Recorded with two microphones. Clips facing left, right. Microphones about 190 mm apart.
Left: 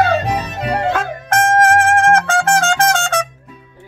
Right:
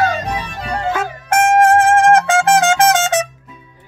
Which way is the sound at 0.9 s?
10° right (ahead or behind).